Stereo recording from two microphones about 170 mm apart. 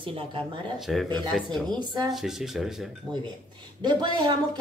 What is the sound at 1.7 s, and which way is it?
Speech, 25° right (ahead or behind).